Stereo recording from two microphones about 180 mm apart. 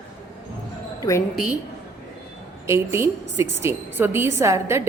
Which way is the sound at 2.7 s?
15° right (ahead or behind).